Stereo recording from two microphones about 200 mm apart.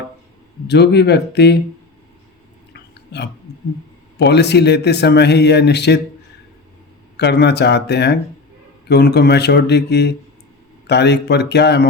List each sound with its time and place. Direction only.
0.7 s speech: 55° left (ahead or behind)
2.7 s burping: 55° left (ahead or behind)
4.2 s speech: 55° left (ahead or behind)
7.2 s speech: 55° left (ahead or behind)